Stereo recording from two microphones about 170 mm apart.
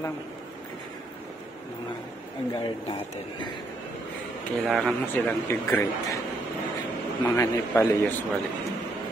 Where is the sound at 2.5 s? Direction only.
25° left (ahead or behind).